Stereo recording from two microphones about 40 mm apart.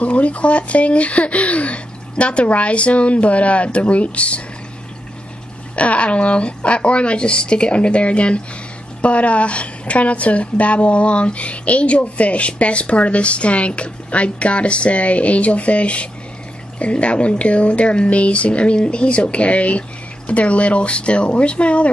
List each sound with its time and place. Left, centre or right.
0.0 s a woman's voice: left
5.8 s a woman's voice: left